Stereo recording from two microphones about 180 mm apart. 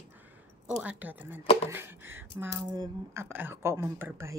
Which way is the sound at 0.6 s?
10° right (ahead or behind).